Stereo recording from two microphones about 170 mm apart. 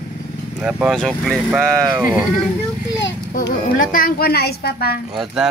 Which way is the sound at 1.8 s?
25° right (ahead or behind).